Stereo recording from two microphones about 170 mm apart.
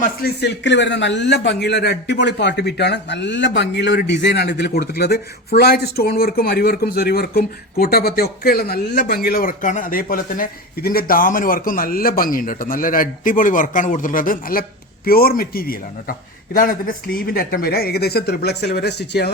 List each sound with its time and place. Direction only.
0.0 s speech: 65° left (ahead or behind)